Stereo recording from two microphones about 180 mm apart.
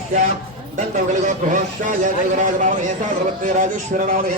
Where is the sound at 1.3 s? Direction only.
45° right (ahead or behind).